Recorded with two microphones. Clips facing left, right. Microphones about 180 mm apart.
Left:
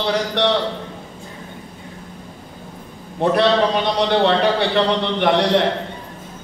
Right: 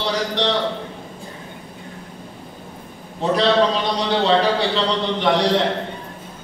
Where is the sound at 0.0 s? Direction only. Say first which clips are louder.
Left 3 dB; 60° left (ahead or behind).